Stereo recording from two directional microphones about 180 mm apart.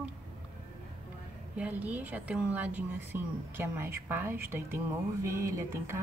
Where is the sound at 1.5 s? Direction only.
10° right (ahead or behind).